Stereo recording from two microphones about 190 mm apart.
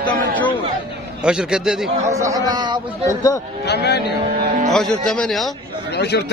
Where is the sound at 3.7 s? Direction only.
60° left (ahead or behind).